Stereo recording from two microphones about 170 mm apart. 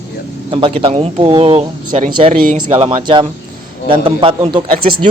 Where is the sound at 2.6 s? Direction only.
30° right (ahead or behind).